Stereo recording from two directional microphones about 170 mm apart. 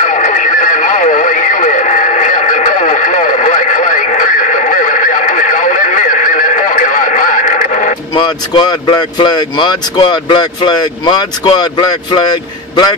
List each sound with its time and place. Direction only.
0.0 s radio: 50° left (ahead or behind)
8.1 s speech: 25° left (ahead or behind)